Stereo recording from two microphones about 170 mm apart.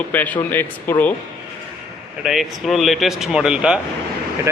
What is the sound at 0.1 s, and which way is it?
Speech, 10° left (ahead or behind).